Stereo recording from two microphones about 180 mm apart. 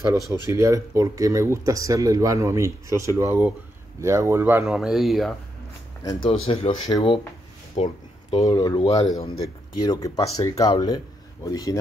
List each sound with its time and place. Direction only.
0.0 s speech: 15° right (ahead or behind); by 5.3 s centre (ahead or behind)
6.2 s speech: 30° left (ahead or behind)
7.7 s a sound: 35° left (ahead or behind)
8.5 s speech: 20° left (ahead or behind)